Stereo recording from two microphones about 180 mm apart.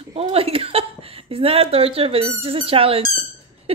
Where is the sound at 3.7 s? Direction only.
35° right (ahead or behind).